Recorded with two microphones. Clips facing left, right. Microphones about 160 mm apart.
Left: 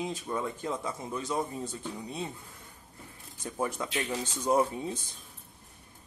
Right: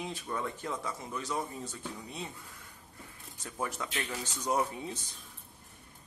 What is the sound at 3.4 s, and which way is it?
Speech, 20° left (ahead or behind).